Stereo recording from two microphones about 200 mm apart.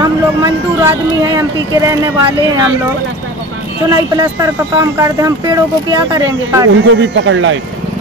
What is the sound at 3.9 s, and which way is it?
Speech, 20° right (ahead or behind).